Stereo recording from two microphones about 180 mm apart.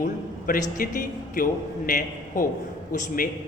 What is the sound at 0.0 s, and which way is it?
A man's voice, 50° left (ahead or behind).